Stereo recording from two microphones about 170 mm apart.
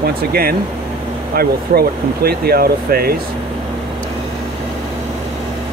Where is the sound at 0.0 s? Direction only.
65° right (ahead or behind).